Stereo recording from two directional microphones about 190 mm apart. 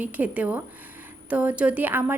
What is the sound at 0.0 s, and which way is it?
A woman's voice, 10° right (ahead or behind).